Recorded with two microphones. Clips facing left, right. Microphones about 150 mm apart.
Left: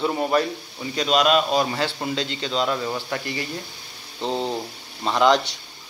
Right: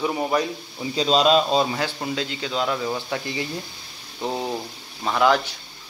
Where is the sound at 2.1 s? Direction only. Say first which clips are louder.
Left 1 dB; 10° right (ahead or behind).